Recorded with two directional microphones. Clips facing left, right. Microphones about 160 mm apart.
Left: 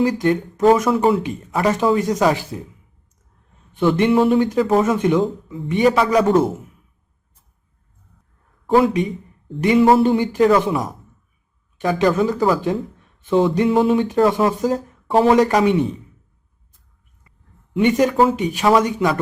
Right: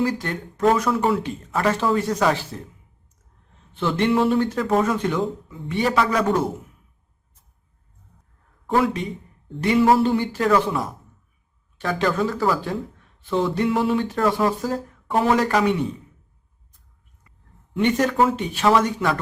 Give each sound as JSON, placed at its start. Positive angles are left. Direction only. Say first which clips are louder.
{"t": 0.0, "sound": "speech", "louder": "left 7 dB", "side_deg": 15}
{"t": 3.8, "sound": "speech", "louder": "left 5 dB", "side_deg": 15}
{"t": 8.6, "sound": "speech", "louder": "left 5 dB", "side_deg": 20}
{"t": 17.7, "sound": "speech", "louder": "left 4 dB", "side_deg": 15}